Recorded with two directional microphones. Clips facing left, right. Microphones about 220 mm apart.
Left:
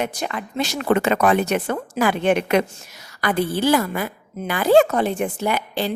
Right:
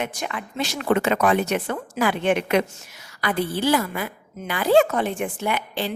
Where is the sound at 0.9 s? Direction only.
50° left (ahead or behind).